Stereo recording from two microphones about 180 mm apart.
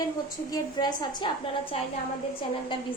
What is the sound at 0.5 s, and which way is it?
Speech, 25° left (ahead or behind).